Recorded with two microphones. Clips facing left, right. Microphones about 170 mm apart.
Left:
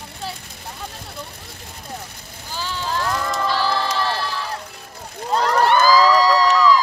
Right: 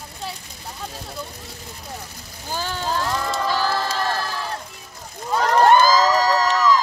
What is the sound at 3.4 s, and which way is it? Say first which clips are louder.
Crowd: left 2 dB; 45° right (ahead or behind).